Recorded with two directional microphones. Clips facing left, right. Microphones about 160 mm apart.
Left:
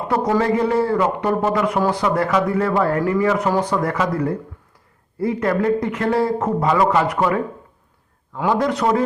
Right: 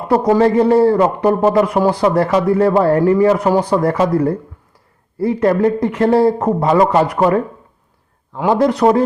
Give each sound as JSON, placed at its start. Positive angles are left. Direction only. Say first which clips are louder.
{"t": 0.1, "sound": "a man's voice", "louder": "right 6 dB", "side_deg": -30}